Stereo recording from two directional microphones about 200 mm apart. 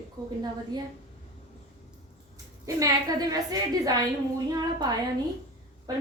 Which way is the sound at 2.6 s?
15° right (ahead or behind).